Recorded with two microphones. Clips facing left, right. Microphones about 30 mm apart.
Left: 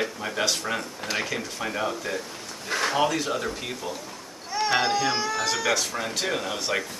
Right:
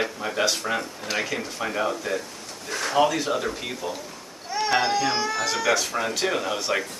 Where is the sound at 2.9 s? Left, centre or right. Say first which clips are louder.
Right 6 dB; centre.